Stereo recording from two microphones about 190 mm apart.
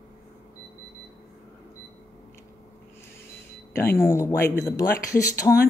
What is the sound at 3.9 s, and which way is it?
Speech, 15° left (ahead or behind).